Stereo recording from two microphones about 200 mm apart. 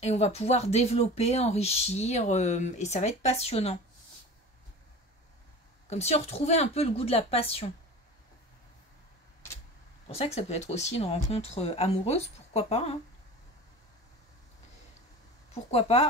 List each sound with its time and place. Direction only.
0.0 s speech: 30° left (ahead or behind)
5.9 s speech: 30° left (ahead or behind)
10.1 s speech: 30° left (ahead or behind)
15.7 s speech: 30° left (ahead or behind)